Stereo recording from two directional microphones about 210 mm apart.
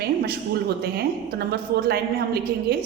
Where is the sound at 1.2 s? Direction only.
50° right (ahead or behind).